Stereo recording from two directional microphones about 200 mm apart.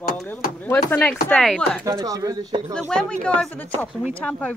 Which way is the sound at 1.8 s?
15° right (ahead or behind).